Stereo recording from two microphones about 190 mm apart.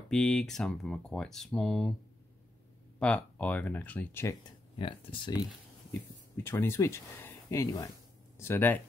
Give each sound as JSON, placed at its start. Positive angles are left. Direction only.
{"t": 0.1, "sound": "speech", "side_deg": 5}
{"t": 3.0, "sound": "speech", "side_deg": 5}
{"t": 4.7, "sound": "speech", "side_deg": 25}
{"t": 5.4, "sound": "speech", "side_deg": 10}